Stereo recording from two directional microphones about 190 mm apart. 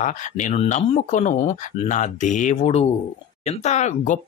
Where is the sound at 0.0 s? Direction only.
40° left (ahead or behind).